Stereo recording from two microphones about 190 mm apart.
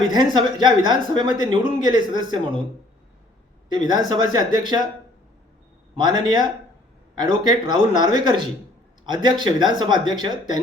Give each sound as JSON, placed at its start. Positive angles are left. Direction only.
{"t": 0.1, "sound": "speech", "side_deg": -25}
{"t": 3.7, "sound": "speech", "side_deg": -20}
{"t": 6.0, "sound": "speech", "side_deg": -25}